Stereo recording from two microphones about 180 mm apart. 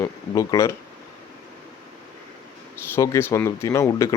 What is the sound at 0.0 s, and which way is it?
Speech, 15° left (ahead or behind).